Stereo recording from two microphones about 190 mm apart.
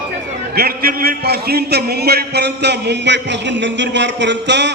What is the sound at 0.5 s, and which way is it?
A man's voice, 55° right (ahead or behind).